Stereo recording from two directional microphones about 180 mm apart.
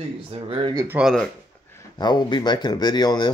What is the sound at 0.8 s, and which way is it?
Speech, 5° right (ahead or behind).